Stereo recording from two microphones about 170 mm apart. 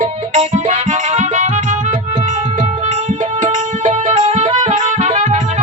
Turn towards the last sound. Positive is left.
turn(degrees=-45)  # may be behind; listen again after turning